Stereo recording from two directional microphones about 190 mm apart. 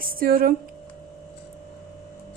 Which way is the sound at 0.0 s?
50° right (ahead or behind).